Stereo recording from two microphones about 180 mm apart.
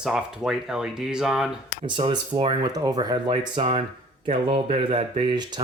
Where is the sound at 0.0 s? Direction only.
5° right (ahead or behind).